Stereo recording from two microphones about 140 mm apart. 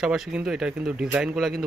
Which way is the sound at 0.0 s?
5° right (ahead or behind).